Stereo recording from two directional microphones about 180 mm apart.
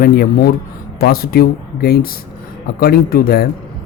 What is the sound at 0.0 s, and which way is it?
Speech, 60° left (ahead or behind).